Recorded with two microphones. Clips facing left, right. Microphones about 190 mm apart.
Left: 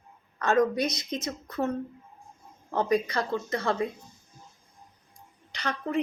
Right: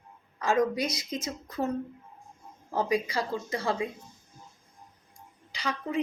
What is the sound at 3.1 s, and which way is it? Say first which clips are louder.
Speech: left 2 dB; 10° right (ahead or behind).